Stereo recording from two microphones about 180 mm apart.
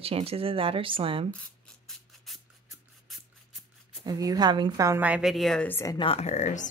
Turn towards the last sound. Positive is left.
turn(degrees=40)  # may be behind; listen again after turning